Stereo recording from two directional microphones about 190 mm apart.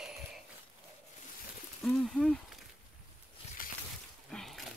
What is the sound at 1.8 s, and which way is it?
Speech, centre (ahead or behind).